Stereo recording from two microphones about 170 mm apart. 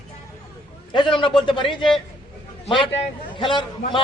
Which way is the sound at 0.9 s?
30° left (ahead or behind).